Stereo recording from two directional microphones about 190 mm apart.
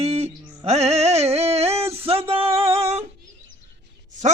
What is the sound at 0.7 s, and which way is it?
Music, 35° right (ahead or behind).